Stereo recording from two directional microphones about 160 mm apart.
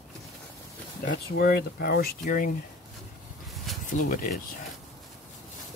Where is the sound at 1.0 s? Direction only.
75° left (ahead or behind).